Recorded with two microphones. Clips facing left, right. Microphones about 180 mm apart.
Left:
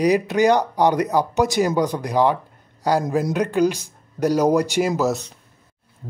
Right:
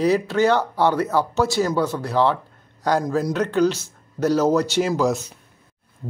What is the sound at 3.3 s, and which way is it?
Speech, 10° left (ahead or behind).